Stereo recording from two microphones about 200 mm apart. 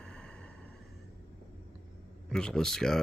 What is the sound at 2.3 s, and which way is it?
Speech, 5° left (ahead or behind).